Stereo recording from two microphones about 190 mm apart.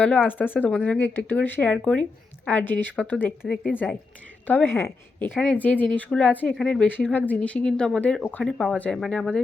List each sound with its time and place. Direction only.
0.0 s a woman's voice: 5° left (ahead or behind)